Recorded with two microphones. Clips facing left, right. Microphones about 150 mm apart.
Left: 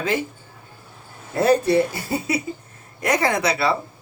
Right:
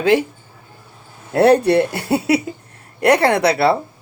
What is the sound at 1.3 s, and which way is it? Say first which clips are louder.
A woman's voice: right 5 dB; 70° right (ahead or behind).